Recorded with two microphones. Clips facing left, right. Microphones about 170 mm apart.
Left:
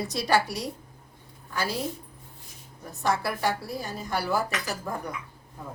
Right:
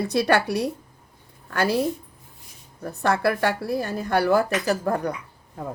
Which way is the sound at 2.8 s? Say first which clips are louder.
Right 6 dB; 60° right (ahead or behind).